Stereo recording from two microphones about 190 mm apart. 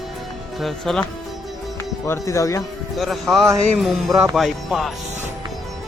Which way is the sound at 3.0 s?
Centre (ahead or behind).